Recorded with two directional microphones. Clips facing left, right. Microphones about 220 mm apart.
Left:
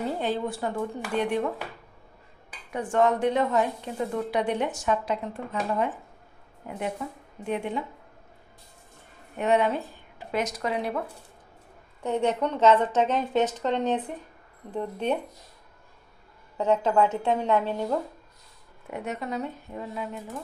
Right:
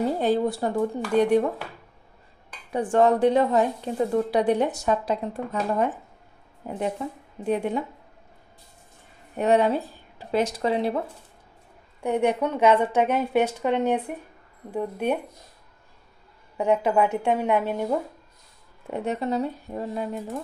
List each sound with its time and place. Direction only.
0.0 s a woman's voice: 40° right (ahead or behind)
2.7 s a woman's voice: 35° right (ahead or behind)
7.0 s a woman's voice: 30° right (ahead or behind)
9.4 s speech: 35° right (ahead or behind)
12.0 s a woman's voice: 10° right (ahead or behind)
16.5 s a woman's voice: 15° right (ahead or behind)
18.9 s a woman's voice: 30° right (ahead or behind)